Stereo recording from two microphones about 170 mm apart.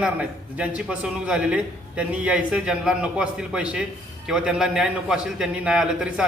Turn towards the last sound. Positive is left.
turn(degrees=-5)  # may be behind; listen again after turning